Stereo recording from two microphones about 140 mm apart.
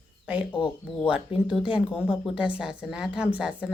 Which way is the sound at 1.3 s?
40° left (ahead or behind).